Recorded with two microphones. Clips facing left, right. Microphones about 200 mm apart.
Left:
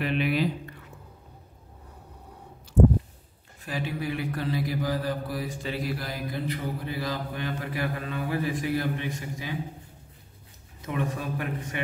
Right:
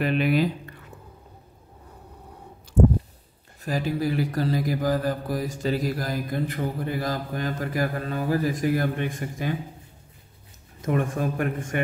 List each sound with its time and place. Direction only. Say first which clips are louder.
0.0 s speech: right 4 dB; 45° right (ahead or behind)
3.6 s mantra: right 6 dB; 40° right (ahead or behind)
10.8 s mantra: right 6 dB; 50° right (ahead or behind)